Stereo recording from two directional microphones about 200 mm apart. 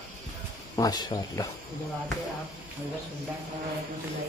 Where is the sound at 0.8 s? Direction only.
20° left (ahead or behind).